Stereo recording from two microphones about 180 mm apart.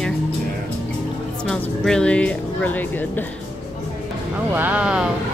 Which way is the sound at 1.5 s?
5° left (ahead or behind).